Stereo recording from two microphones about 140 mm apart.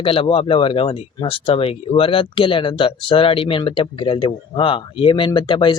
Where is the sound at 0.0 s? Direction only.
40° left (ahead or behind).